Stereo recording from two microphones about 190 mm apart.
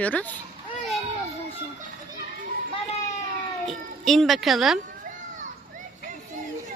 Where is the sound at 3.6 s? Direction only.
Centre (ahead or behind).